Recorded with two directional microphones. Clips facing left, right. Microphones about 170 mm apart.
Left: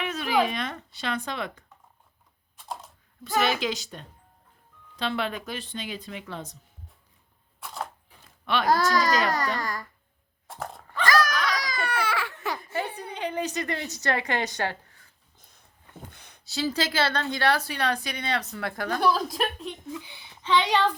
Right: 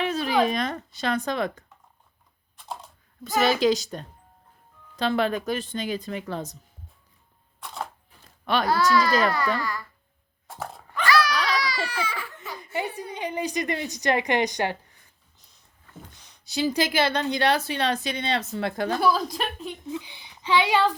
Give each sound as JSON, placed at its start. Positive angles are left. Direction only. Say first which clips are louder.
{"t": 0.0, "sound": "a sound", "louder": "right 4 dB", "side_deg": -35}
{"t": 0.4, "sound": "speech", "louder": "right 5 dB", "side_deg": -40}
{"t": 3.2, "sound": "a woman's voice", "louder": "right 5 dB", "side_deg": -40}
{"t": 7.6, "sound": "camera", "louder": "right 1 dB", "side_deg": 0}
{"t": 8.6, "sound": "a child's voice", "louder": "right 1 dB", "side_deg": 40}
{"t": 10.4, "sound": "dog", "louder": "right 1 dB", "side_deg": 0}
{"t": 11.0, "sound": "a sound", "louder": "right 1 dB", "side_deg": 45}
{"t": 11.6, "sound": "baby cry", "louder": "even", "side_deg": 50}
{"t": 12.5, "sound": "a woman's voice", "louder": "right 1 dB", "side_deg": -15}
{"t": 15.4, "sound": "a sound", "louder": "left 4 dB", "side_deg": 55}
{"t": 16.5, "sound": "a woman's voice", "louder": "right 3 dB", "side_deg": -15}
{"t": 18.9, "sound": "a woman's voice", "louder": "left 1 dB", "side_deg": 0}
{"t": 19.9, "sound": "speech", "louder": "right 4 dB", "side_deg": -20}